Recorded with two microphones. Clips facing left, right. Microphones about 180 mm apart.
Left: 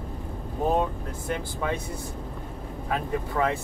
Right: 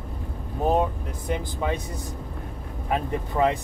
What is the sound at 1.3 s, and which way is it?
Speech, 15° right (ahead or behind).